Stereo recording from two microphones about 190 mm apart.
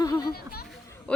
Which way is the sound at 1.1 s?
5° left (ahead or behind).